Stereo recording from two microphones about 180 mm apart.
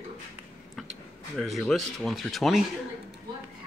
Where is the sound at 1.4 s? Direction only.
Centre (ahead or behind).